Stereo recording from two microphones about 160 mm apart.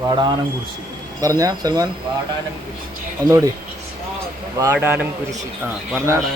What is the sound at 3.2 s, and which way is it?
Speech, 20° right (ahead or behind).